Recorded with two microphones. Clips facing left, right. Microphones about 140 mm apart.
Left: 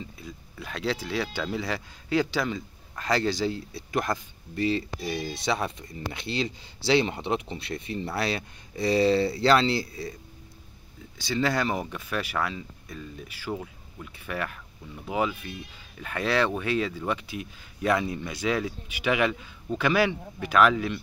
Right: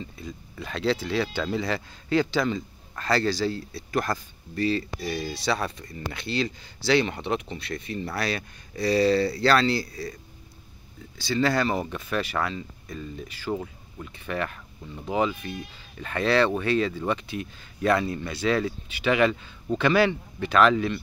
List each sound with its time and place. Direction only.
0.0 s speech: 5° left (ahead or behind); by 10.1 s 25° left (ahead or behind)
11.1 s speech: 15° left (ahead or behind)
13.6 s speech: 5° right (ahead or behind)
14.1 s speech: 5° left (ahead or behind)